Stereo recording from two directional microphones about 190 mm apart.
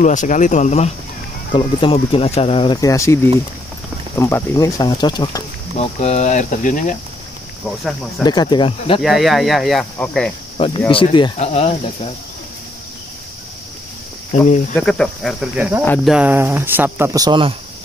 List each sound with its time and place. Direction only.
0.0 s speech: 40° left (ahead or behind)
1.5 s speech: 25° left (ahead or behind)
5.8 s speech: 35° left (ahead or behind)
8.2 s speech: 20° left (ahead or behind)
9.0 s speech: centre (ahead or behind)
10.9 s speech: 30° left (ahead or behind)
14.3 s speech: 40° left (ahead or behind)
14.8 s speech: 5° left (ahead or behind)
15.8 s speech: 10° left (ahead or behind)
16.1 s speech: 10° right (ahead or behind); by 17.6 s 25° right (ahead or behind)